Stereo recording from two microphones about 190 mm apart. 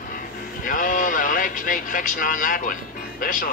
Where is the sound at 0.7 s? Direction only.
45° left (ahead or behind).